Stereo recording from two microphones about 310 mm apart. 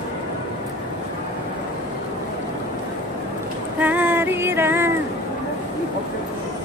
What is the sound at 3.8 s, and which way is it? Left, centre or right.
Female singing, centre.